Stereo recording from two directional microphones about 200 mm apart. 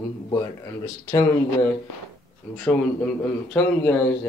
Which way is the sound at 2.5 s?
10° left (ahead or behind).